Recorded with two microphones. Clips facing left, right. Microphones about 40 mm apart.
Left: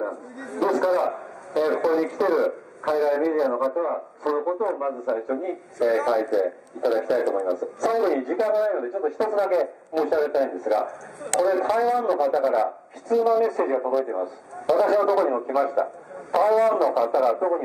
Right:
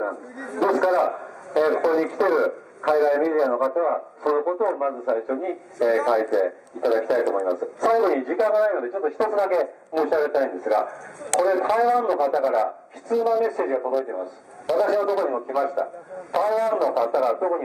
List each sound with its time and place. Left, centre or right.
0.4 s a man's voice: centre
8.8 s a man's voice: centre
9.2 s speech: centre